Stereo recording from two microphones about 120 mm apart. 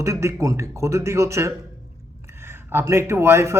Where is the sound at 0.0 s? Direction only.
25° right (ahead or behind).